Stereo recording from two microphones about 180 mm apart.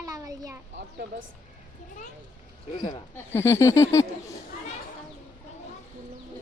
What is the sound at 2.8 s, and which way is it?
Speech, 25° left (ahead or behind).